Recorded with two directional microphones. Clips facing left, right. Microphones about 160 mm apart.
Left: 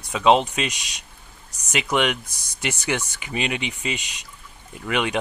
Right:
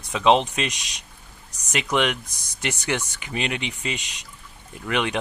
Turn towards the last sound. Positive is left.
turn(degrees=5)  # may be behind; listen again after turning